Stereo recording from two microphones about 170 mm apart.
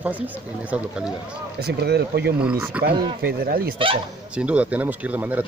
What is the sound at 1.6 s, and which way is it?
Speech, 75° right (ahead or behind).